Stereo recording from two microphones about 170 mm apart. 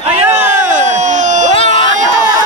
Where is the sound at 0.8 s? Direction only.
45° right (ahead or behind).